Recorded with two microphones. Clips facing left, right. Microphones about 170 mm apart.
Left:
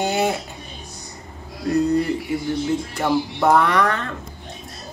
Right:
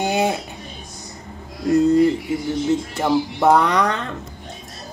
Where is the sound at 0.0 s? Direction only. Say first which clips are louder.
Right 1 dB; 15° right (ahead or behind).